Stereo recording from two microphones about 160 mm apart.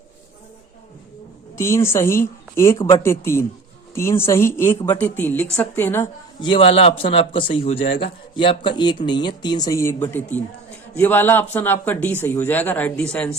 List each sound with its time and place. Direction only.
1.5 s a woman's voice: 15° left (ahead or behind)
6.4 s a man's voice: 35° left (ahead or behind); by 13.3 s 5° left (ahead or behind)